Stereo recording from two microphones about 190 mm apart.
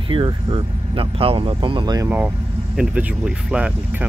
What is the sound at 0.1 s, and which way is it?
Speech, 25° right (ahead or behind).